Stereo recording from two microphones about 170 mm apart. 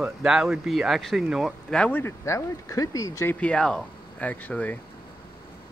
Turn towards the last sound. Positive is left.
turn(degrees=10)  # may be behind; listen again after turning